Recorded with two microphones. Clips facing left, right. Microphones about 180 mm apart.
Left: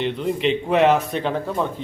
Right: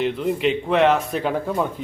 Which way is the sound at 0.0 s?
5° right (ahead or behind).